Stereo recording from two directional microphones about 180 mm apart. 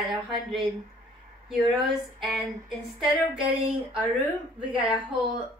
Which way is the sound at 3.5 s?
30° right (ahead or behind).